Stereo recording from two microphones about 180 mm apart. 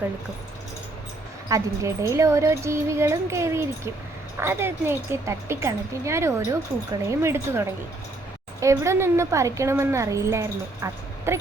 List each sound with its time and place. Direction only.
1.5 s a woman's voice: 20° right (ahead or behind)